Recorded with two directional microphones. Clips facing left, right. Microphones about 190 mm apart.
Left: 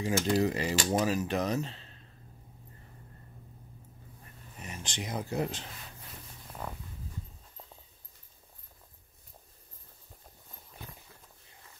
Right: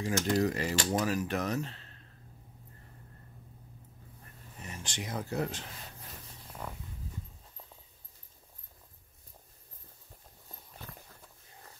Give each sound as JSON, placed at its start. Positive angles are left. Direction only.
{"t": 0.0, "sound": "speech", "side_deg": 20}
{"t": 4.6, "sound": "speech", "side_deg": 20}